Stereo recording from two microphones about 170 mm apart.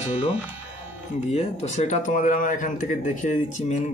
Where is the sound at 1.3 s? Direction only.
40° left (ahead or behind).